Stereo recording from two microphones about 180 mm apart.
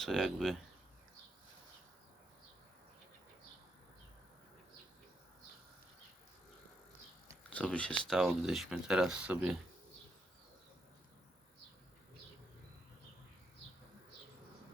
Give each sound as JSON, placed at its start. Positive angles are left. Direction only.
{"t": 0.0, "sound": "speech", "side_deg": 0}
{"t": 7.5, "sound": "speech", "side_deg": 5}